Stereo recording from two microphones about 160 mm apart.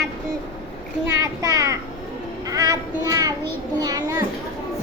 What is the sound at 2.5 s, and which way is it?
Child singing, 20° right (ahead or behind).